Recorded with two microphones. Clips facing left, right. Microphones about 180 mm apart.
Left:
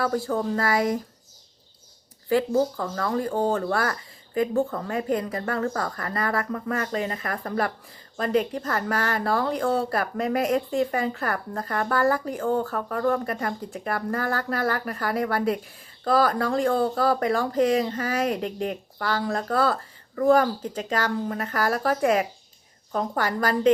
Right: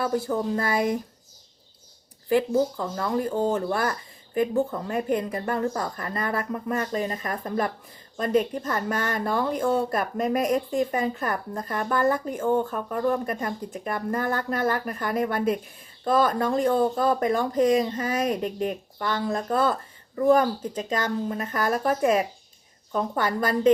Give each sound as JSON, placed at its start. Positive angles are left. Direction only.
{"t": 0.0, "sound": "speech", "side_deg": -20}
{"t": 2.3, "sound": "speech", "side_deg": -20}